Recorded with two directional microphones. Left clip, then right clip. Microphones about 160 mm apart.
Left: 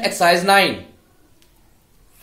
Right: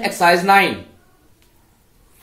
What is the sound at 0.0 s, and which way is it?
Speech, 45° left (ahead or behind).